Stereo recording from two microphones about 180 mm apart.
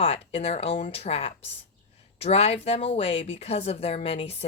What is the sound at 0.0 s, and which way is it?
A woman's voice, 35° left (ahead or behind).